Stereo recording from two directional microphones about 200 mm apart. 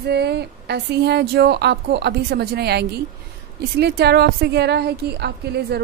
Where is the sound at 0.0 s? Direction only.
55° right (ahead or behind).